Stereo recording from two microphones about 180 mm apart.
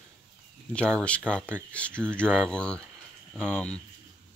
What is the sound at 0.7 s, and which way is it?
Speech, 5° left (ahead or behind).